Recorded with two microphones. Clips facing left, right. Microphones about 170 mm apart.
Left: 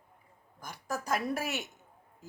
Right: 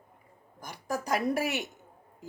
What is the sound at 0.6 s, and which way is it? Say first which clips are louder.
Speech: right 3 dB; 15° right (ahead or behind).